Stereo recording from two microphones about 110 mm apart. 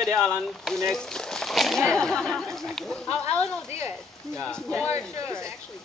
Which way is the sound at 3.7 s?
25° right (ahead or behind).